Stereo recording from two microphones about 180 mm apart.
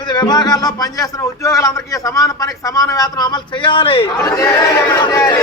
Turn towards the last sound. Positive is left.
turn(degrees=20)  # may be behind; listen again after turning